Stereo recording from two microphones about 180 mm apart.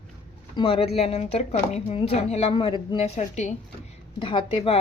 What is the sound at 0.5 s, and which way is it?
A woman's voice, 30° left (ahead or behind).